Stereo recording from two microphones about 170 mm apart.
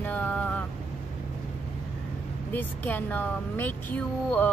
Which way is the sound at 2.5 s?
10° left (ahead or behind).